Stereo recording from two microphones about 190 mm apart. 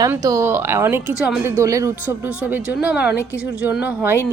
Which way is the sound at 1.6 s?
15° right (ahead or behind).